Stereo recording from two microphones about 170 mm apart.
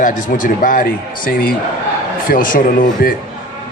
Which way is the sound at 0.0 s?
50° left (ahead or behind).